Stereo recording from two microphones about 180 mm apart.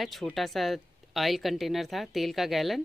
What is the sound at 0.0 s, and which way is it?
Speech, centre (ahead or behind).